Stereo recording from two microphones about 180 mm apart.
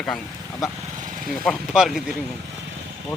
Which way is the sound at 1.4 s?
Centre (ahead or behind).